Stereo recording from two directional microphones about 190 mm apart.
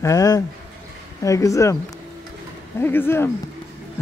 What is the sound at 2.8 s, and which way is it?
Speech, 10° left (ahead or behind).